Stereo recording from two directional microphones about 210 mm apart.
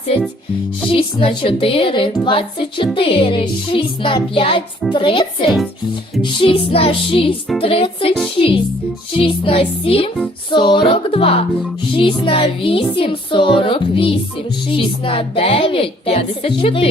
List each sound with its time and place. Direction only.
0.9 s speech: 25° left (ahead or behind)